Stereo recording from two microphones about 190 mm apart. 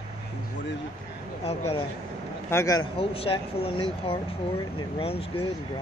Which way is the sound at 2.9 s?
30° left (ahead or behind).